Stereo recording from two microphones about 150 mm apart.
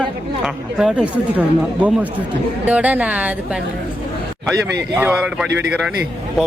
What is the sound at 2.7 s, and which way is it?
Speech, 10° right (ahead or behind).